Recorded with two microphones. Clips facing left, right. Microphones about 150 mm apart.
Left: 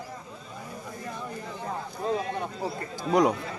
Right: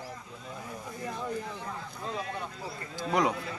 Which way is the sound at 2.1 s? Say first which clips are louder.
Left 7 dB; 35° left (ahead or behind).